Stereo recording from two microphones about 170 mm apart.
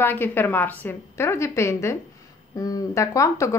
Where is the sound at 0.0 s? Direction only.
10° left (ahead or behind).